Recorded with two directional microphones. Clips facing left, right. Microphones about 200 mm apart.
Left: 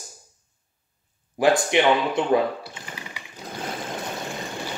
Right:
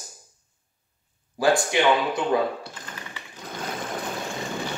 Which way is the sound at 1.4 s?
20° left (ahead or behind).